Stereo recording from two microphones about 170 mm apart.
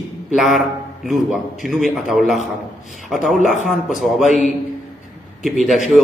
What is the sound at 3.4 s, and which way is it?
Speech, 45° left (ahead or behind).